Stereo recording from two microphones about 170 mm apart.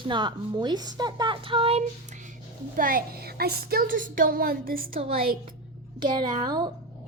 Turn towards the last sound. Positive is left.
turn(degrees=-25)  # may be behind; listen again after turning